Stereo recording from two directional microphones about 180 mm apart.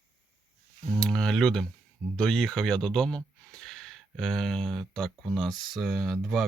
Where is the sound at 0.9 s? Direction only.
5° left (ahead or behind).